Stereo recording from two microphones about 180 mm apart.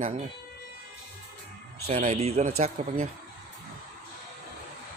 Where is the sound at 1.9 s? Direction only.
40° right (ahead or behind).